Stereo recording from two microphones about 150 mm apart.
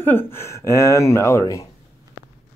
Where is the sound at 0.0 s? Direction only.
15° left (ahead or behind).